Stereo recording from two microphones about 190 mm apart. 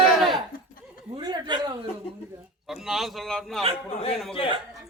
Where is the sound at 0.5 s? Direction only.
50° left (ahead or behind).